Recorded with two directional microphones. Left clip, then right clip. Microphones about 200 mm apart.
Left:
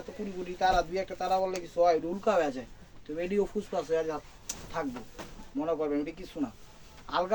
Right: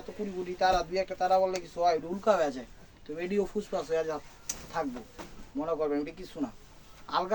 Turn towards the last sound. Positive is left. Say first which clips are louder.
# even
turn(degrees=-25)  # may be behind; listen again after turning